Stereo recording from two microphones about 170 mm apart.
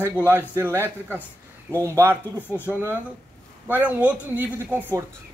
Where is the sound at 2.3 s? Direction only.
10° left (ahead or behind).